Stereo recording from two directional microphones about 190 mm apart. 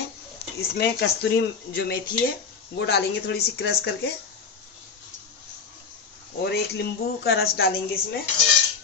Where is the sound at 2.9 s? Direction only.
60° left (ahead or behind).